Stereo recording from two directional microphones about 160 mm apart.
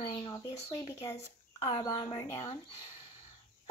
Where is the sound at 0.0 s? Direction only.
30° left (ahead or behind).